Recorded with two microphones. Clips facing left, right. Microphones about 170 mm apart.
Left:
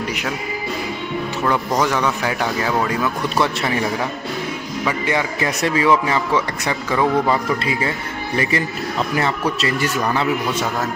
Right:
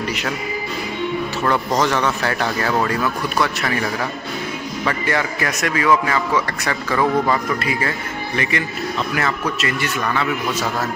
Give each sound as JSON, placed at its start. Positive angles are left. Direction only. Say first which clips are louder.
{"t": 1.4, "sound": "speech", "louder": "even", "side_deg": 10}
{"t": 4.8, "sound": "speech", "louder": "left 1 dB", "side_deg": 15}
{"t": 5.6, "sound": "speech", "louder": "left 1 dB", "side_deg": 25}
{"t": 8.4, "sound": "a man's voice", "louder": "left 2 dB", "side_deg": 35}